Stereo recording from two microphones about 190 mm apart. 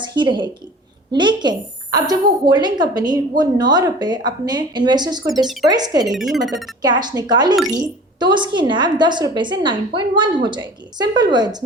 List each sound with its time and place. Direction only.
0.2 s a woman's voice: 25° right (ahead or behind)
6.1 s speech: centre (ahead or behind)
6.8 s a woman's voice: 20° right (ahead or behind)